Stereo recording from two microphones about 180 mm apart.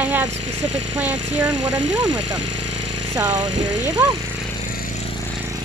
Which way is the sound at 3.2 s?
20° right (ahead or behind).